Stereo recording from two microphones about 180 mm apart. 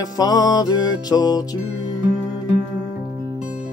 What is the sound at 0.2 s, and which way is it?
Music, 25° left (ahead or behind).